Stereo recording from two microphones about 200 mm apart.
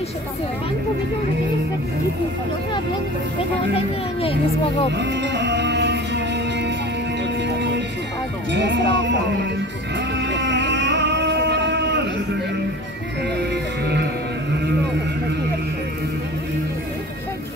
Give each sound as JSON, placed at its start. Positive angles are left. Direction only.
{"t": 3.7, "sound": "a child's voice", "side_deg": 30}
{"t": 4.9, "sound": "music", "side_deg": -60}
{"t": 8.5, "sound": "speech", "side_deg": -60}
{"t": 10.3, "sound": "music", "side_deg": -60}